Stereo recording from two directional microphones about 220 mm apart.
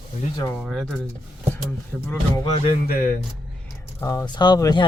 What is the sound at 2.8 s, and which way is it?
Speech, 45° left (ahead or behind).